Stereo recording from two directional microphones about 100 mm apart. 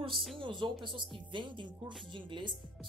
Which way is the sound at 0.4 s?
50° right (ahead or behind).